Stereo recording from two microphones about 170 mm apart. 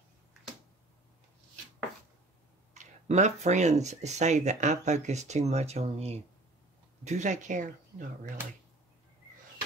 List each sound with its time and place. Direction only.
2.7 s speech: 45° right (ahead or behind)